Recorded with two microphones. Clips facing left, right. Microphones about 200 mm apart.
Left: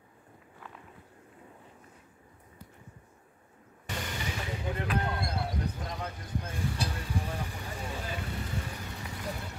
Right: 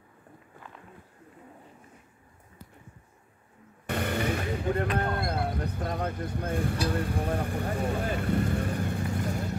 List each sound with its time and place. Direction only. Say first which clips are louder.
3.8 s vehicle: right 9 dB; 60° right (ahead or behind)
4.9 s speech: right 3 dB; 50° right (ahead or behind)